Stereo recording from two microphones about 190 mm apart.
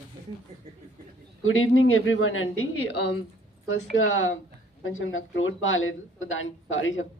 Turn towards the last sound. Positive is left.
turn(degrees=90)